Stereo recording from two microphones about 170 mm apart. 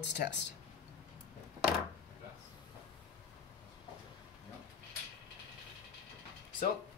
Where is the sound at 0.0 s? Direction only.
90° left.